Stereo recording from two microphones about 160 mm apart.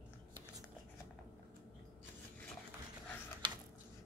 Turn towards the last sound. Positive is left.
turn(degrees=-30)  # may be behind; listen again after turning